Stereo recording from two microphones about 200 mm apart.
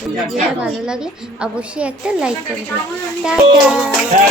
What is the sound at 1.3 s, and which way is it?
Speech, 5° right (ahead or behind).